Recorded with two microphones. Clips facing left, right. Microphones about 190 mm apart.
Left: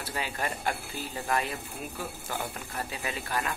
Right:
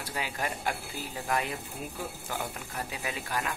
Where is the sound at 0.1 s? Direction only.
10° right (ahead or behind).